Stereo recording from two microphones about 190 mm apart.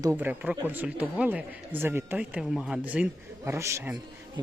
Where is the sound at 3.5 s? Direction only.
15° right (ahead or behind).